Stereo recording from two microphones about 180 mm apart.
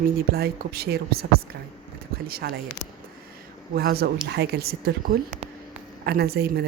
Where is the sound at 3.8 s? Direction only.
60° right (ahead or behind).